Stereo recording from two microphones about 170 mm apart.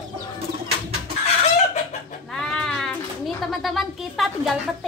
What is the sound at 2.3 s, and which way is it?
Sheep, 5° left (ahead or behind).